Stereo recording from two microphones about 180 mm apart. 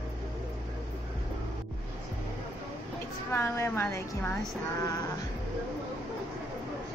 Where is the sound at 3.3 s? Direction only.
15° left (ahead or behind).